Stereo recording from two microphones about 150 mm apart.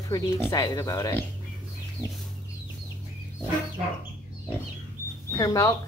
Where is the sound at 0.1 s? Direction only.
25° left (ahead or behind).